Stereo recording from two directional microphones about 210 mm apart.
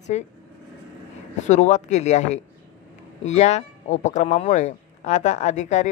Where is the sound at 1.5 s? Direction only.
35° left (ahead or behind).